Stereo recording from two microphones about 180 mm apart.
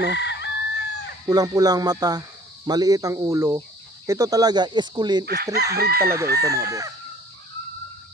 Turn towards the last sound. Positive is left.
turn(degrees=-20)  # may be behind; listen again after turning